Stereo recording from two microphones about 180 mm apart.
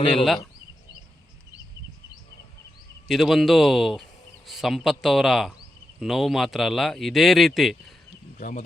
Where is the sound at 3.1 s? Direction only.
Centre (ahead or behind).